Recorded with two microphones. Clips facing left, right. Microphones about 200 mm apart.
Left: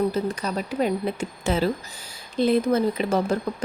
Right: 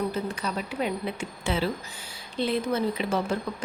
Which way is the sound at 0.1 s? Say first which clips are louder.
Left 4 dB; 40° left (ahead or behind).